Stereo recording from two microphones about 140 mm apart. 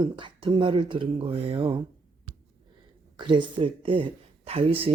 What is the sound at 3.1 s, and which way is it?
Speech, 35° right (ahead or behind).